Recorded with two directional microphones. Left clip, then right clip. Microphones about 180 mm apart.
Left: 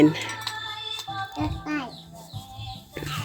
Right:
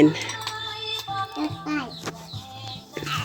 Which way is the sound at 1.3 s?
5° left (ahead or behind).